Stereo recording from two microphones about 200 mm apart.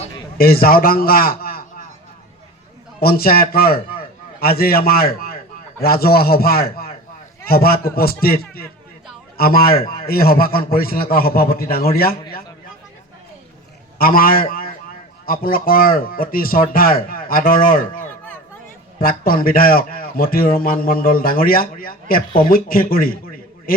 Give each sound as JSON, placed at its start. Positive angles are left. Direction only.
{"t": 0.3, "sound": "a man's voice", "side_deg": 50}
{"t": 3.0, "sound": "a man's voice", "side_deg": 50}
{"t": 14.0, "sound": "a man's voice", "side_deg": 45}